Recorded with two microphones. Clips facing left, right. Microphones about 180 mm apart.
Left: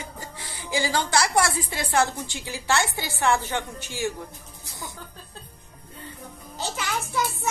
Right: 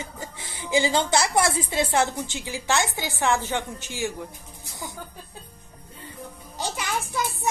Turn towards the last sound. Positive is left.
turn(degrees=-15)  # may be behind; listen again after turning